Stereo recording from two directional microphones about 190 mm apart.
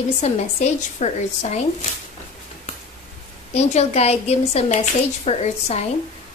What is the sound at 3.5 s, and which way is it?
A woman's voice, 35° left (ahead or behind).